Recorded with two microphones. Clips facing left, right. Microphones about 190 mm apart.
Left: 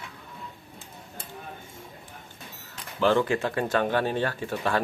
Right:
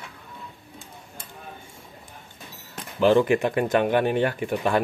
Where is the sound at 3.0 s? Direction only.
15° right (ahead or behind).